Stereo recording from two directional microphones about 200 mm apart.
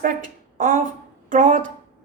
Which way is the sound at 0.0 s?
40° right (ahead or behind).